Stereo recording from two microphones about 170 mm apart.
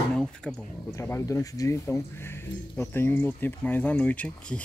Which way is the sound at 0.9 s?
15° left (ahead or behind).